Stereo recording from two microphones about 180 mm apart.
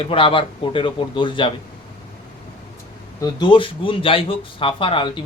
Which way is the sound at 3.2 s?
25° left (ahead or behind).